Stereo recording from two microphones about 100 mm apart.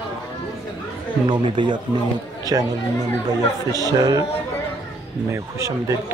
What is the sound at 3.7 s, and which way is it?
Speech, 40° right (ahead or behind).